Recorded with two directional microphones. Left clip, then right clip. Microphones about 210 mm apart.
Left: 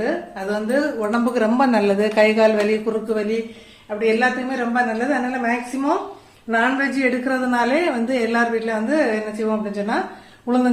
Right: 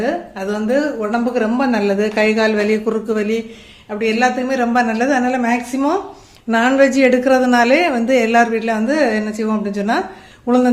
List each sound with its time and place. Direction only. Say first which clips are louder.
0.0 s a woman's voice: right 3 dB; 40° right (ahead or behind)
1.1 s a woman's voice: right 1 dB; 10° right (ahead or behind)
2.8 s a woman's voice: right 3 dB; 30° right (ahead or behind)
3.8 s a woman's voice: right 2 dB; 50° right (ahead or behind)
10.4 s speech: right 5 dB; 30° right (ahead or behind)